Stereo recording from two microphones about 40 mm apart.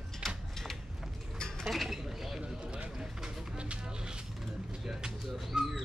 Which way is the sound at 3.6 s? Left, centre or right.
Right.